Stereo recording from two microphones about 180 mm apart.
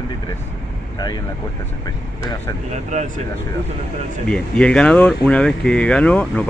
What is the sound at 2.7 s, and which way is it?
Speech, 40° right (ahead or behind).